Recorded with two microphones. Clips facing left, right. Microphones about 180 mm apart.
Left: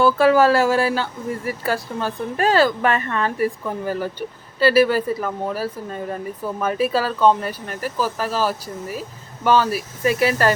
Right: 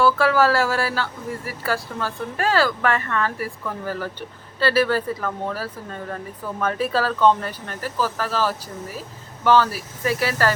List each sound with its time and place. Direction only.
0.0 s speech: 20° left (ahead or behind)